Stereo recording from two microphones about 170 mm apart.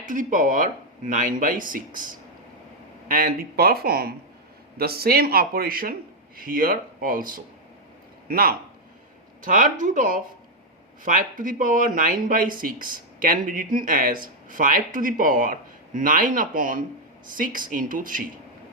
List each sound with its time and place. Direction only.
0.0 s speech: 50° right (ahead or behind)
3.1 s speech: 55° right (ahead or behind)